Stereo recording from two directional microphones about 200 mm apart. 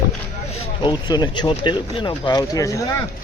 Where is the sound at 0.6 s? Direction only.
25° left (ahead or behind).